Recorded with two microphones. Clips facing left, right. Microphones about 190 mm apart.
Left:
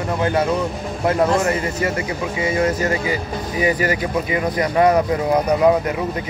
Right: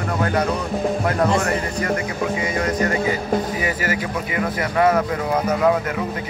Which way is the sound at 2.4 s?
25° left (ahead or behind).